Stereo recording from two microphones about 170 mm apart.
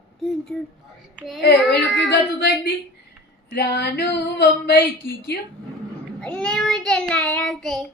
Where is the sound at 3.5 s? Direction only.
75° left (ahead or behind).